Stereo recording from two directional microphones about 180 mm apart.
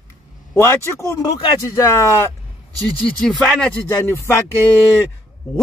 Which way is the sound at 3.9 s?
15° left (ahead or behind).